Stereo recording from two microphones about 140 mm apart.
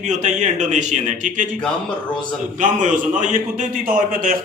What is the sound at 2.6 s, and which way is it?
A man's voice, 65° right (ahead or behind).